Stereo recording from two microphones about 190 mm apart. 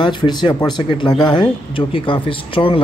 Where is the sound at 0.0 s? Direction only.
25° left (ahead or behind).